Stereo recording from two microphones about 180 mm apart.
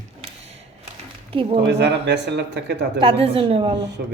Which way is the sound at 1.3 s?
30° right (ahead or behind).